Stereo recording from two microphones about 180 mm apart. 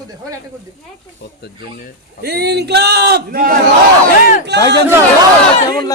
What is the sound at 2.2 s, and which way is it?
A man's voice, 60° right (ahead or behind).